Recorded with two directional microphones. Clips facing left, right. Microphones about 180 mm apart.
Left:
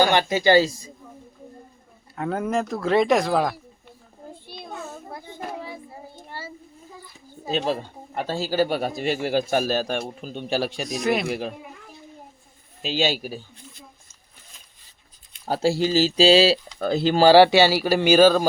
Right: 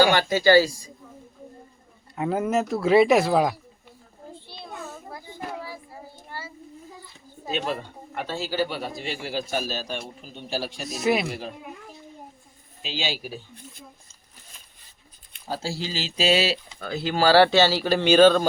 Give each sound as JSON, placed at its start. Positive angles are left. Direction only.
{"t": 0.1, "sound": "speech", "side_deg": 20}
{"t": 2.1, "sound": "speech", "side_deg": -5}
{"t": 4.4, "sound": "children playing", "side_deg": 15}
{"t": 5.1, "sound": "child singing", "side_deg": 20}
{"t": 7.5, "sound": "a man's voice", "side_deg": 35}
{"t": 10.8, "sound": "speech", "side_deg": -5}
{"t": 12.8, "sound": "a man's voice", "side_deg": 50}
{"t": 15.4, "sound": "speech", "side_deg": 60}
{"t": 17.2, "sound": "speech", "side_deg": 15}